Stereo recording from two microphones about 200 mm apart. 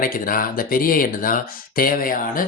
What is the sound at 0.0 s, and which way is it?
Speech, 45° left (ahead or behind).